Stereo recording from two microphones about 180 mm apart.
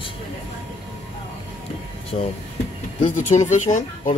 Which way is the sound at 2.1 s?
35° left (ahead or behind).